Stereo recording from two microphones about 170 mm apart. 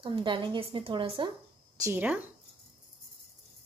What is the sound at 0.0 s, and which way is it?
A woman's voice, 30° right (ahead or behind).